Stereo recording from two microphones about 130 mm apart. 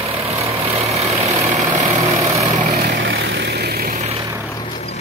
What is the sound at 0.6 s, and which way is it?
Vehicle, 55° right (ahead or behind).